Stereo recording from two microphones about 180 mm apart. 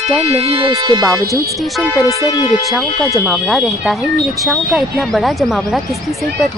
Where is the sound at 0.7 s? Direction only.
20° right (ahead or behind).